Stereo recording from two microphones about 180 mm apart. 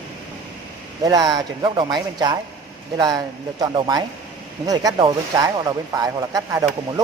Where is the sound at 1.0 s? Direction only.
20° right (ahead or behind).